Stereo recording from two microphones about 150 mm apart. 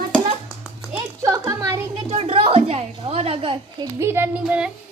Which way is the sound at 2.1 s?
40° right (ahead or behind).